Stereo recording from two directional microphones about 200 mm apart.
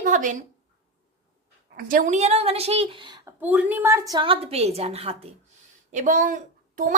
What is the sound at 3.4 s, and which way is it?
A woman's voice, 10° right (ahead or behind).